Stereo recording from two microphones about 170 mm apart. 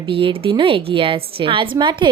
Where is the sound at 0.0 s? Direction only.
30° right (ahead or behind).